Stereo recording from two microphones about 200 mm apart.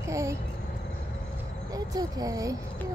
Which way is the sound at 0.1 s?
15° right (ahead or behind).